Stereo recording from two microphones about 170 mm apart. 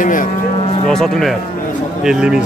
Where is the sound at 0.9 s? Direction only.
5° left (ahead or behind).